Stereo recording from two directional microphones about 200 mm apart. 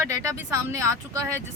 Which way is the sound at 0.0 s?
15° right (ahead or behind).